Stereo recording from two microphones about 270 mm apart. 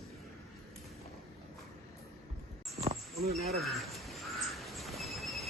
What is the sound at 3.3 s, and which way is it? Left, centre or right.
Speech, right.